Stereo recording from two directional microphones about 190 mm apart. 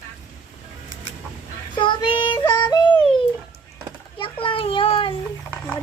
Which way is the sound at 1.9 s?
25° left (ahead or behind).